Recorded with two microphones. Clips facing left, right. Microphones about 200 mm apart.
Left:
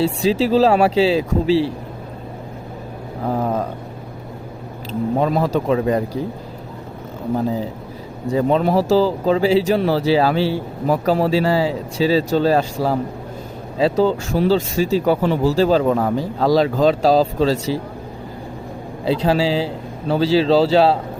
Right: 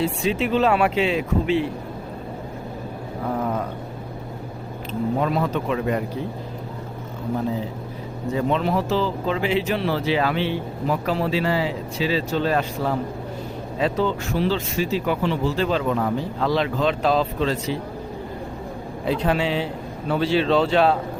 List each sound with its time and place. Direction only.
0.0 s speech: 30° left (ahead or behind)
4.9 s speech: 35° left (ahead or behind)
8.3 s speech: 40° left (ahead or behind)
19.0 s speech: 30° left (ahead or behind)